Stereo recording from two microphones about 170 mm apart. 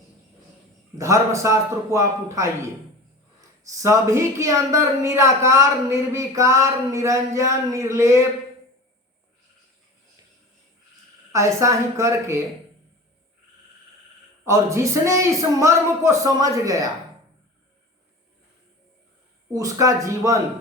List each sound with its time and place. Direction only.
0.9 s speech: 20° right (ahead or behind)
11.3 s speech: 15° right (ahead or behind)
14.4 s speech: 15° right (ahead or behind)
19.5 s speech: 20° right (ahead or behind)